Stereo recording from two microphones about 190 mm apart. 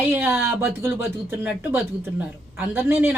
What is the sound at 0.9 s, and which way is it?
Speech, 10° right (ahead or behind).